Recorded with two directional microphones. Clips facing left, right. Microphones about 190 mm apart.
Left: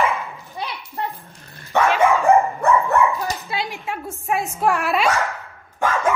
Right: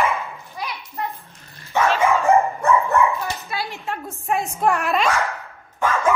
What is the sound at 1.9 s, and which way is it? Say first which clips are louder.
Dog: left 2 dB; 15° left (ahead or behind).